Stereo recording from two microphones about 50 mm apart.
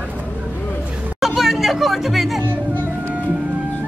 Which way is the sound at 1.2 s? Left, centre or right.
Centre.